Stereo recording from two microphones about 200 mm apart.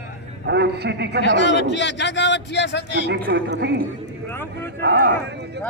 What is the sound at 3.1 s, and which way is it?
Speech, 55° right (ahead or behind).